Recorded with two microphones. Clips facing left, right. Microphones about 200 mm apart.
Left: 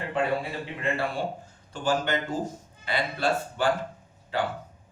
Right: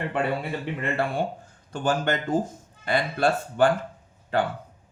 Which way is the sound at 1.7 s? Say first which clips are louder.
Right 2 dB; 50° right (ahead or behind).